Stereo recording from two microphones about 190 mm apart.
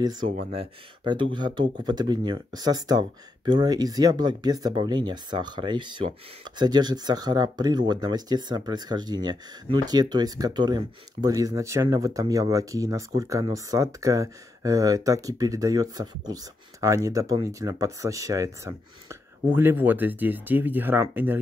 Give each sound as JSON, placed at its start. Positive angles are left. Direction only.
{"t": 0.5, "sound": "speech", "side_deg": -30}